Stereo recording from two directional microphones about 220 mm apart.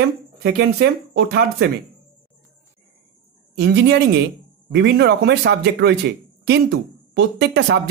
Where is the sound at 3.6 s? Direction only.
50° right (ahead or behind).